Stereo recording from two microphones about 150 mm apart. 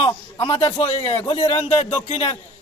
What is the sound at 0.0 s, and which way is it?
A man's voice, 40° left (ahead or behind).